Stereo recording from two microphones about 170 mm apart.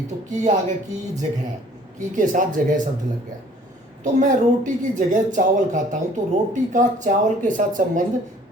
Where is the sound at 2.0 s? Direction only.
50° right (ahead or behind).